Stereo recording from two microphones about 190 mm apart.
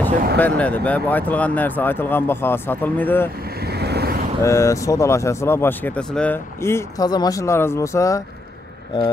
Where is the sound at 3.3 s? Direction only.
55° right (ahead or behind).